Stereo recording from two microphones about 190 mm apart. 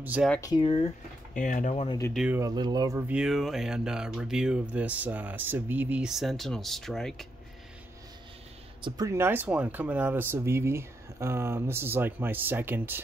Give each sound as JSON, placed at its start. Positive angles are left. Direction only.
{"t": 0.0, "sound": "speech", "side_deg": -10}
{"t": 0.4, "sound": "speech", "side_deg": 25}
{"t": 1.3, "sound": "speech", "side_deg": 40}
{"t": 1.9, "sound": "speech", "side_deg": 15}
{"t": 2.1, "sound": "speech", "side_deg": -5}
{"t": 2.4, "sound": "speech", "side_deg": -20}
{"t": 8.8, "sound": "speech", "side_deg": -20}